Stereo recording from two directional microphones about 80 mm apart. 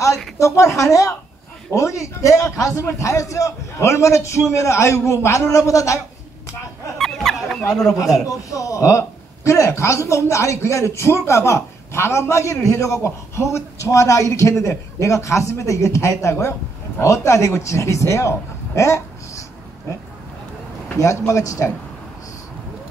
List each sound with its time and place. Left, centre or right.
0.4 s a man's voice: left
7.0 s a sound: centre
7.9 s a man's voice: left
21.0 s a man's voice: left